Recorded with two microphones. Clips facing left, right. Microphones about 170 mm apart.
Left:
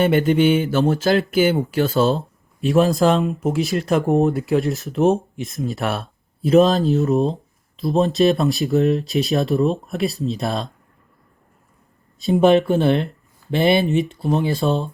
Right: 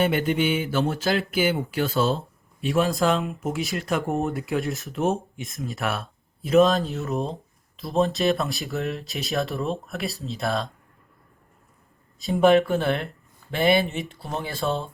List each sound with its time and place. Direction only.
0.0 s speech: 40° left (ahead or behind)
7.8 s speech: 20° left (ahead or behind)
12.3 s speech: 20° left (ahead or behind)